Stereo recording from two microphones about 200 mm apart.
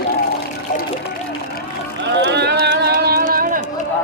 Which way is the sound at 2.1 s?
60° right (ahead or behind).